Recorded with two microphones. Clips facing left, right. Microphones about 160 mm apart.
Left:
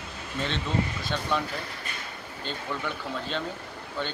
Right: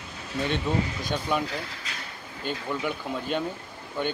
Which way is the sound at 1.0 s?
15° right (ahead or behind).